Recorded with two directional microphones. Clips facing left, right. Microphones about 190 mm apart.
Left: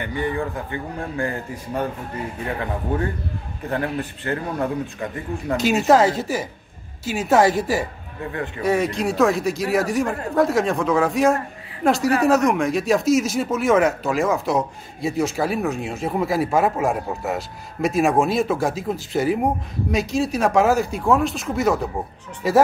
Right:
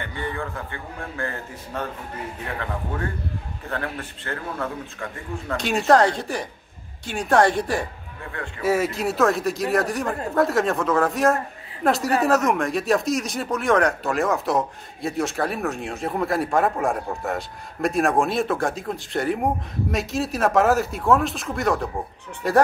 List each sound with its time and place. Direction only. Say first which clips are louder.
0.0 s a man's voice: left 5 dB; 15° left (ahead or behind)
3.6 s a man's voice: left 6 dB; 15° left (ahead or behind)
5.6 s speech: left 2 dB; centre (ahead or behind)